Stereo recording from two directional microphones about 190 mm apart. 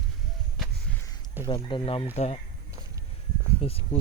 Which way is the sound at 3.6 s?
30° left (ahead or behind).